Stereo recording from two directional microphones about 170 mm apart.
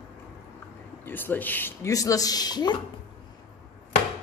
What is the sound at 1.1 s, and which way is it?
Speech, 10° left (ahead or behind).